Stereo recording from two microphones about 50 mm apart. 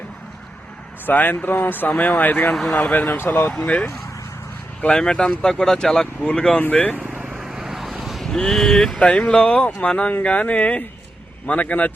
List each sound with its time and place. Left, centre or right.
1.0 s speech: left
2.5 s speech: centre
2.7 s speech: left
3.2 s speech: left
4.8 s speech: centre
6.6 s speech: left
7.3 s vehicle: centre
8.3 s speech: centre
9.0 s speech: left